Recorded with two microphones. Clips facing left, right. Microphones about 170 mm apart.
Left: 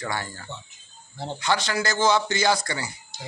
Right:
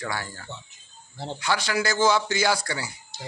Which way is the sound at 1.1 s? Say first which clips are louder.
Left 2 dB; centre (ahead or behind).